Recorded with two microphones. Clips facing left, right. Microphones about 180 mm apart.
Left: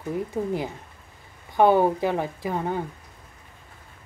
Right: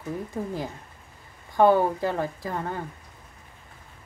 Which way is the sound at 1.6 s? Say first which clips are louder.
Left 1 dB; 20° left (ahead or behind).